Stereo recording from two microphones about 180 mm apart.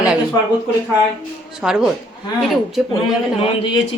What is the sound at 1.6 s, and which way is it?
Speech, 5° right (ahead or behind).